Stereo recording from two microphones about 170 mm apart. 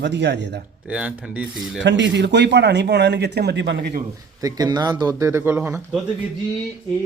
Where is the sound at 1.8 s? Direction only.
90° right.